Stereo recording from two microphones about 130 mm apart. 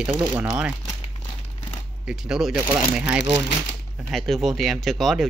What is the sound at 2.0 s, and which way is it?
Speech, 5° right (ahead or behind).